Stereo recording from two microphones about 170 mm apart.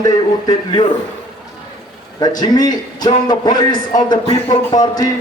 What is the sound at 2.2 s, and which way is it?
A man's voice, 25° left (ahead or behind).